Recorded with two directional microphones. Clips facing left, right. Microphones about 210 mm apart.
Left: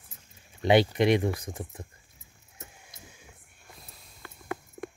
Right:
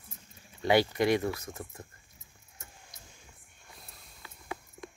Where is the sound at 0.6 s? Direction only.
20° left (ahead or behind).